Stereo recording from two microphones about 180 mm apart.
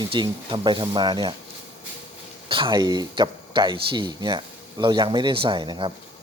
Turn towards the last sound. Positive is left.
turn(degrees=-25)  # may be behind; listen again after turning